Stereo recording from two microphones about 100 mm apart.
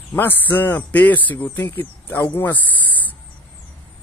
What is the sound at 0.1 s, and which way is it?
Speech, 20° left (ahead or behind).